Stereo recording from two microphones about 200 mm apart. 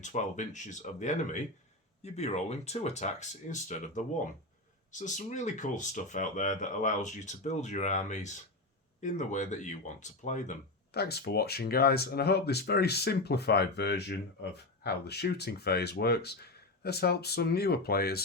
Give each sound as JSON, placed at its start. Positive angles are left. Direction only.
{"t": 0.0, "sound": "speech", "side_deg": 35}
{"t": 10.9, "sound": "speech", "side_deg": 55}